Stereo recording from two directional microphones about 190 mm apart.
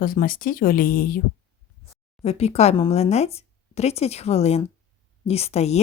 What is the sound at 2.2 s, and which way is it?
Speech, 35° left (ahead or behind).